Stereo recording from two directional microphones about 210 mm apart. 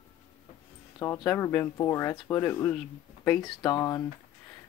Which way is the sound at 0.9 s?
20° left (ahead or behind).